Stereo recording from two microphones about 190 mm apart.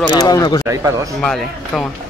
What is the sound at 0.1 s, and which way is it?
Speech, 20° left (ahead or behind).